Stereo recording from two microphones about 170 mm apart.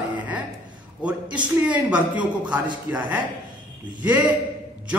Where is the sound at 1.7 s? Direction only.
10° right (ahead or behind).